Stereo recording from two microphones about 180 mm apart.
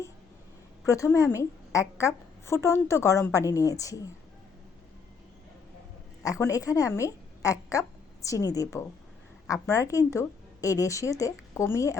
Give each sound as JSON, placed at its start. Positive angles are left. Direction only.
{"t": 0.9, "sound": "a woman's voice", "side_deg": 15}
{"t": 6.2, "sound": "a woman's voice", "side_deg": 20}